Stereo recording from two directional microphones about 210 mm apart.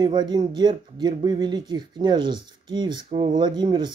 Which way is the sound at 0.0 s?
20° right (ahead or behind).